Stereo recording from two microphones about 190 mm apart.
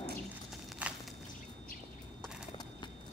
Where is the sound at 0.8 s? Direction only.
5° right (ahead or behind).